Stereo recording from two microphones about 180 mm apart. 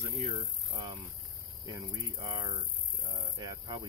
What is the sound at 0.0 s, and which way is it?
Speech, 40° right (ahead or behind).